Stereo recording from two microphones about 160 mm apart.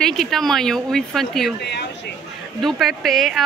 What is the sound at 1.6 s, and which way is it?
Speech, 90° left.